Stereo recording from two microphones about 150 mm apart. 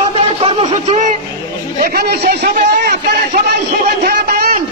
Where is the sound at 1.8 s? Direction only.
90° right.